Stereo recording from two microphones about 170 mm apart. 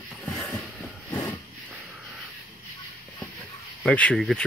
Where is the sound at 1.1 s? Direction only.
10° left (ahead or behind).